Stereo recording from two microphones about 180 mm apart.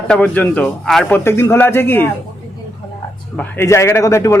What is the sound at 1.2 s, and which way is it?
Speech, 15° left (ahead or behind).